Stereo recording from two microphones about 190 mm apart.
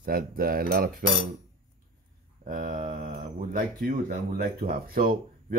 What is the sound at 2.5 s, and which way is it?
Speech, 45° right (ahead or behind).